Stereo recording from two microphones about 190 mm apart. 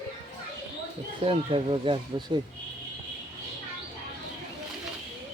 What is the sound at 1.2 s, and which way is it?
Speech, 30° right (ahead or behind).